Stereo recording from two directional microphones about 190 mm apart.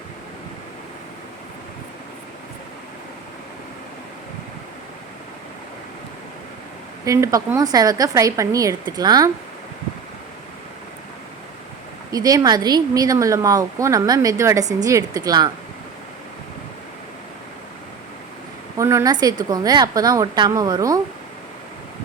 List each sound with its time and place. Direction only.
7.0 s speech: 15° right (ahead or behind)
12.1 s speech: 20° right (ahead or behind)
18.8 s speech: 15° right (ahead or behind)